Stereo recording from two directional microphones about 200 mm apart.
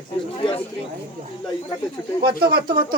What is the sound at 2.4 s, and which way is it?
Speech, 50° right (ahead or behind).